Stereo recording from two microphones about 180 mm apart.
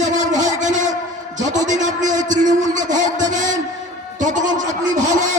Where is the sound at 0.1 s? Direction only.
40° right (ahead or behind).